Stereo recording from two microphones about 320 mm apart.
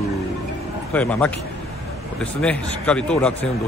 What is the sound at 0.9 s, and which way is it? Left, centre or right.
Speech, centre.